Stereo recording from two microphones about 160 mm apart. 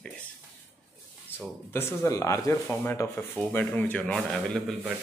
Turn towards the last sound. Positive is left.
turn(degrees=5)  # may be behind; listen again after turning